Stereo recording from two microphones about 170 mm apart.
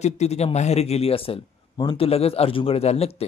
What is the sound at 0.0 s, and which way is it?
Speech, 40° left (ahead or behind).